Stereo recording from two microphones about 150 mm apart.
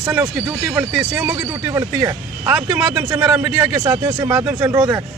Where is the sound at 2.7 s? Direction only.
10° right (ahead or behind).